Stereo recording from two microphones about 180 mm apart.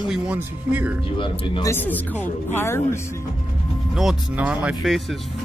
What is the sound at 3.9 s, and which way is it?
Speech, centre (ahead or behind).